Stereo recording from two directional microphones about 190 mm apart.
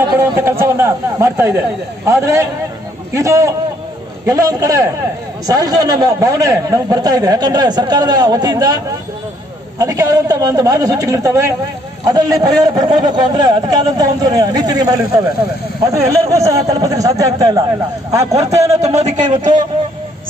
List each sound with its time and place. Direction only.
0.2 s a sound: 10° right (ahead or behind)
2.0 s a man's voice: 15° right (ahead or behind)
18.9 s speech: 35° right (ahead or behind)